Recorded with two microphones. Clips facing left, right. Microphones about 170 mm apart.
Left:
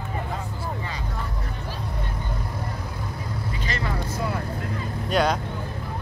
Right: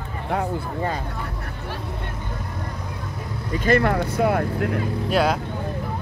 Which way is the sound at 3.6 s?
60° right (ahead or behind).